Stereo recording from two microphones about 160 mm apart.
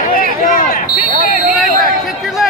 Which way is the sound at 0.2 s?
60° left (ahead or behind).